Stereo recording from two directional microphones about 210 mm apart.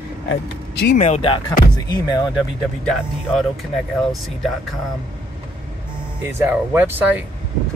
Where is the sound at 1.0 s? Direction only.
30° left (ahead or behind).